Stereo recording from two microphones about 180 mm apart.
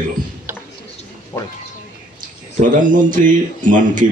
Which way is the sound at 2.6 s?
45° right (ahead or behind).